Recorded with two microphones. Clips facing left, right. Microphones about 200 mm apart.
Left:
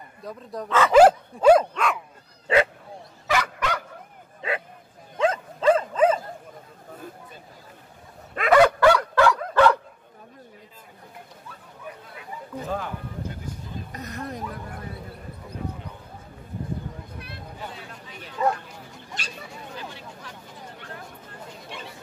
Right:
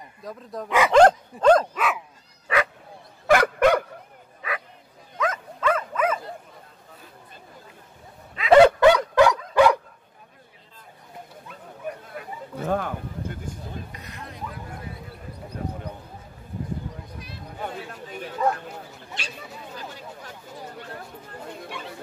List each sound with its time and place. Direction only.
0.2 s speech: centre (ahead or behind)
0.7 s speech: 15° right (ahead or behind)
0.9 s dog: 5° left (ahead or behind)
1.8 s dog: 5° right (ahead or behind)
2.4 s bow-wow: 30° left (ahead or behind)
3.3 s dog: 55° right (ahead or behind)
4.4 s bow-wow: 25° left (ahead or behind)
5.1 s dog: 30° left (ahead or behind)
8.5 s dog: 25° right (ahead or behind)
11.9 s a sound: 50° right (ahead or behind)
13.9 s a sound: 45° left (ahead or behind)
17.6 s chatter: 50° right (ahead or behind)
19.2 s a sound: 40° left (ahead or behind)